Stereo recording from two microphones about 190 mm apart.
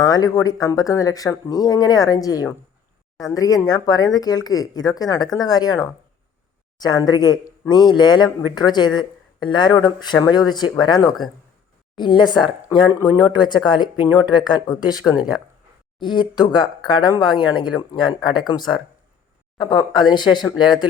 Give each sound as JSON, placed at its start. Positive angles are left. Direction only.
{"t": 0.0, "sound": "speech", "side_deg": 20}
{"t": 14.9, "sound": "speech", "side_deg": -5}
{"t": 16.0, "sound": "speech", "side_deg": 25}